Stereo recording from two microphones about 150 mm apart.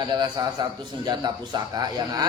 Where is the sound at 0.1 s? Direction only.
30° right (ahead or behind).